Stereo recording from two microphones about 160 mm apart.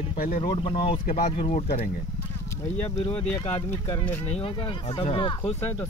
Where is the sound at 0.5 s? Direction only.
30° left (ahead or behind).